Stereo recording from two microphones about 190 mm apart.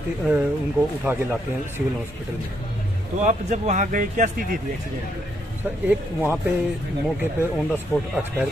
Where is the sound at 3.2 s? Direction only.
40° right (ahead or behind).